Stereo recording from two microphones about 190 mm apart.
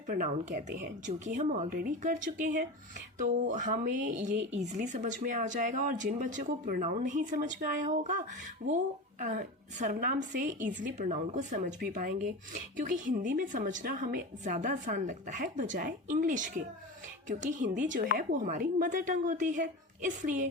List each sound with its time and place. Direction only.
0.1 s speech: 45° right (ahead or behind)